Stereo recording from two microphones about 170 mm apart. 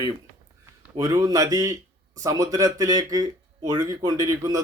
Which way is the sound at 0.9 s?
20° right (ahead or behind).